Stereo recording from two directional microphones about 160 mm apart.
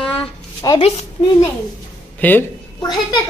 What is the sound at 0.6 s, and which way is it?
Speech, 30° left (ahead or behind).